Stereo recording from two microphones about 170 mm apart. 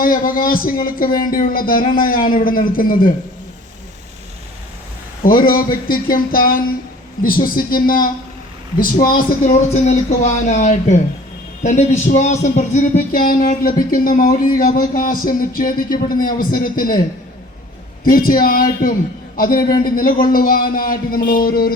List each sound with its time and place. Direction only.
0.0 s a man's voice: 55° left (ahead or behind)
5.2 s a man's voice: 55° left (ahead or behind)
9.7 s a man's voice: 45° left (ahead or behind)
18.0 s a man's voice: 55° left (ahead or behind)